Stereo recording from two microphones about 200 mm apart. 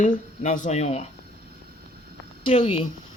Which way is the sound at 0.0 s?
40° left (ahead or behind).